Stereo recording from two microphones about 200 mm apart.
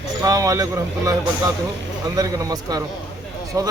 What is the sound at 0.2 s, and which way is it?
Speech, 15° right (ahead or behind).